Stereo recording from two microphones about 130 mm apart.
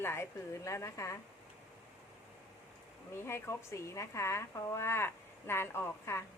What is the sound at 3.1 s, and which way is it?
A woman's voice, 20° left (ahead or behind).